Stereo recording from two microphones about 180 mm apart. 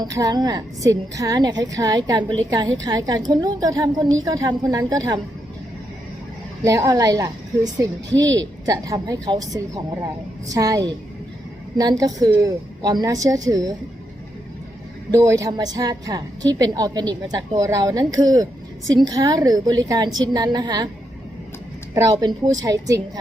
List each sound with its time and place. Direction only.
0.0 s a woman's voice: 20° right (ahead or behind)
6.7 s a woman's voice: 20° right (ahead or behind)
15.1 s a woman's voice: 20° right (ahead or behind)
22.1 s a woman's voice: 25° right (ahead or behind)